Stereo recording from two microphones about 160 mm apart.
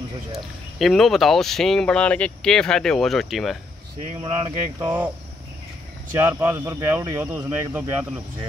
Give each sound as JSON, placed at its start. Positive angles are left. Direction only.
{"t": 0.3, "sound": "speech", "side_deg": 0}
{"t": 4.2, "sound": "speech", "side_deg": -35}
{"t": 4.7, "sound": "speech", "side_deg": -15}
{"t": 6.1, "sound": "speech", "side_deg": -15}